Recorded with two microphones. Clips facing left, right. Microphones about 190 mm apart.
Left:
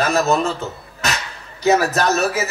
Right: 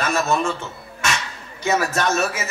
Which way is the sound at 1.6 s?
35° left (ahead or behind).